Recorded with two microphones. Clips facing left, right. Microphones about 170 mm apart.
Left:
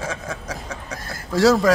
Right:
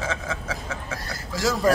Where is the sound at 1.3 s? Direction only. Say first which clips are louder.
Left 8 dB; 70° left (ahead or behind).